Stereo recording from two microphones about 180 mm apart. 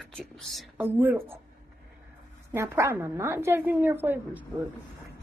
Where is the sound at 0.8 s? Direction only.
10° right (ahead or behind).